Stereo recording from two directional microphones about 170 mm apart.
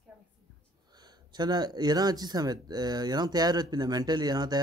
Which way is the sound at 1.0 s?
25° right (ahead or behind).